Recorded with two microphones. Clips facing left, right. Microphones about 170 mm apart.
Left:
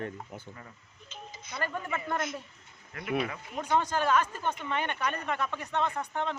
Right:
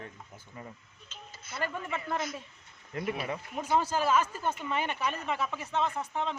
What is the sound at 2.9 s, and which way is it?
Speech, 25° right (ahead or behind).